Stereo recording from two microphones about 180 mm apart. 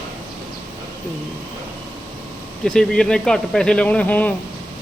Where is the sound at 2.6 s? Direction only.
5° left (ahead or behind).